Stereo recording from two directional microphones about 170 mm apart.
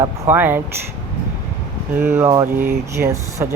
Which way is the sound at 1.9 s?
15° right (ahead or behind).